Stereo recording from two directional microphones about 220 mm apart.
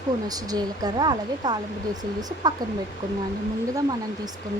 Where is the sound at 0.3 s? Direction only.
15° right (ahead or behind).